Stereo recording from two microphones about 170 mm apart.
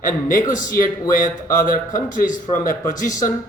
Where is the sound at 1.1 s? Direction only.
55° left (ahead or behind).